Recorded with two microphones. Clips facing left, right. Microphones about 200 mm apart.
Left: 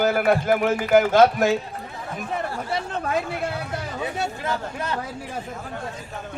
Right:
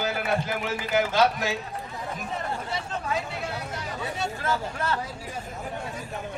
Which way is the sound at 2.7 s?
55° left (ahead or behind).